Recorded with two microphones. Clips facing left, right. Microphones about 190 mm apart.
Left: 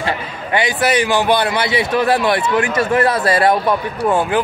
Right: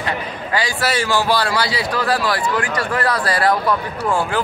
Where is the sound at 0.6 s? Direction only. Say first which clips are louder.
Left 5 dB; 20° left (ahead or behind).